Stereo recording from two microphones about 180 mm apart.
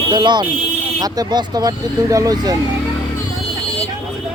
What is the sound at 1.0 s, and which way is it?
Speech, 20° right (ahead or behind).